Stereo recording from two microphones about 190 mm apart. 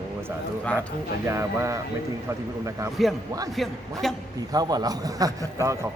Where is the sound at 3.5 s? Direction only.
Centre (ahead or behind).